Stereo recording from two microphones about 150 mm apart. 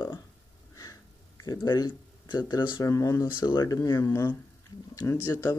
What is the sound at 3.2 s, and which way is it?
Speech, 30° left (ahead or behind).